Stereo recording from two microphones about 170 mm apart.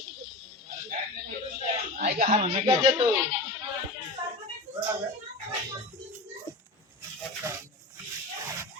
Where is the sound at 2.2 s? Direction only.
35° right (ahead or behind).